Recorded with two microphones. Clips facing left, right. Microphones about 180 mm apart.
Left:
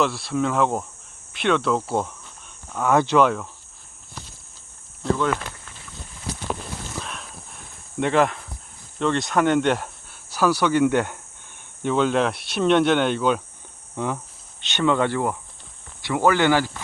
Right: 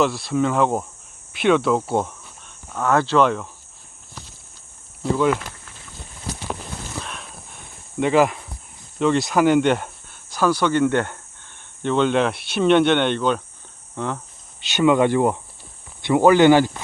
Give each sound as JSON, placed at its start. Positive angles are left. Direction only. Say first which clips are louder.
{"t": 0.0, "sound": "speech", "louder": "right 3 dB", "side_deg": 0}
{"t": 2.8, "sound": "speech", "louder": "even", "side_deg": 15}
{"t": 7.0, "sound": "a sound", "louder": "right 1 dB", "side_deg": 0}
{"t": 9.0, "sound": "speech", "louder": "right 3 dB", "side_deg": -5}
{"t": 13.9, "sound": "cricket", "louder": "even", "side_deg": 10}
{"t": 14.6, "sound": "speech", "louder": "right 4 dB", "side_deg": -10}